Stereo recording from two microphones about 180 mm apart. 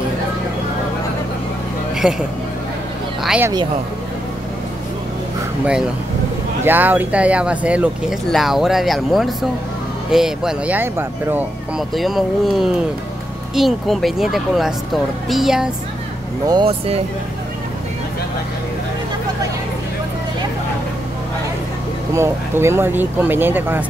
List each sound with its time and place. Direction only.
2.0 s speech: 5° right (ahead or behind)
3.3 s speech: 10° right (ahead or behind)
6.6 s speech: 10° right (ahead or behind)
11.9 s speech: centre (ahead or behind)
16.4 s speech: 30° right (ahead or behind)
22.1 s speech: 15° right (ahead or behind)